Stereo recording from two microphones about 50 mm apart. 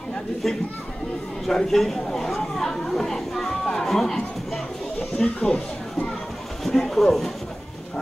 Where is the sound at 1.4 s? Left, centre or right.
Centre.